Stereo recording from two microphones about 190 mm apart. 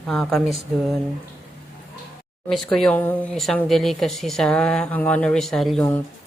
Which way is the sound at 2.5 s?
Centre (ahead or behind).